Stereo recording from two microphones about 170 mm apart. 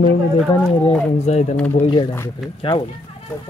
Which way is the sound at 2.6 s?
30° left (ahead or behind).